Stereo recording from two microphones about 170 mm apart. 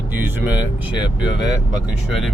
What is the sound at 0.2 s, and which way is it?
Speech, 10° right (ahead or behind).